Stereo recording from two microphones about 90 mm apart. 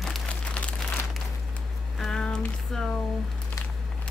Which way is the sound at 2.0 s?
10° left (ahead or behind).